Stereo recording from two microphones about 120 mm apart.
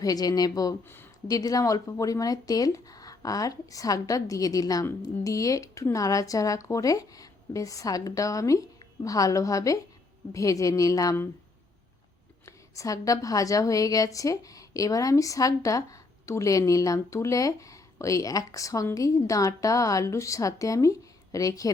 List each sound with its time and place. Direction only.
0.0 s a woman's voice: 30° left (ahead or behind)
12.5 s a woman's voice: 25° left (ahead or behind)